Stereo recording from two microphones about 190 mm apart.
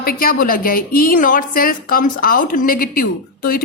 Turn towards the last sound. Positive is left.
turn(degrees=50)  # may be behind; listen again after turning